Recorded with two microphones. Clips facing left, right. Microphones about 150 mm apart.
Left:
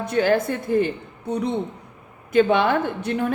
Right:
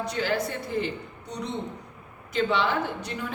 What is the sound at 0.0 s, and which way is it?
A woman's voice, 50° left (ahead or behind).